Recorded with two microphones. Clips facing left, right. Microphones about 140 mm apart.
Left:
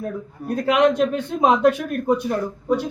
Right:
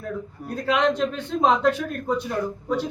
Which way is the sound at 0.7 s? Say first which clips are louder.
Left 4 dB; 15° left (ahead or behind).